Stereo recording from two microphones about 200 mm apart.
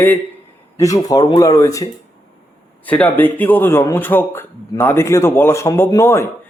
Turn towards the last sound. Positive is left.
turn(degrees=10)  # may be behind; listen again after turning